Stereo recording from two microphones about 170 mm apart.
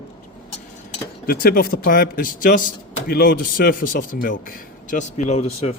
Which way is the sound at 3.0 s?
65° left (ahead or behind).